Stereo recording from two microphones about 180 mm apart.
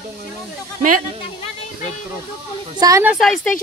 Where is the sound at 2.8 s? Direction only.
15° right (ahead or behind).